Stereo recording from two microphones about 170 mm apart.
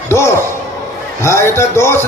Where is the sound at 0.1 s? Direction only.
15° left (ahead or behind).